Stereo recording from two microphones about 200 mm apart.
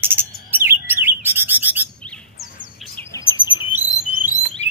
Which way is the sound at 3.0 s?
15° left (ahead or behind).